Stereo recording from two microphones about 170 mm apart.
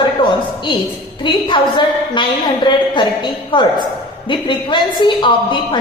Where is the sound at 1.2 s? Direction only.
30° left (ahead or behind).